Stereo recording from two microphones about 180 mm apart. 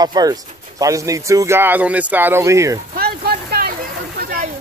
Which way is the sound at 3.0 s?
60° right (ahead or behind).